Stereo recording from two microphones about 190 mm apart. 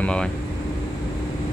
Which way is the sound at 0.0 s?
5° left (ahead or behind).